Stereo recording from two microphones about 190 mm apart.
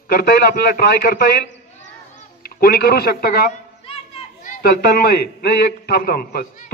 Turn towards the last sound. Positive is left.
turn(degrees=50)  # may be behind; listen again after turning